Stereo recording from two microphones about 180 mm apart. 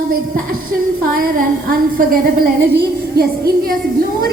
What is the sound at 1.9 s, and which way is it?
Speech, 50° right (ahead or behind).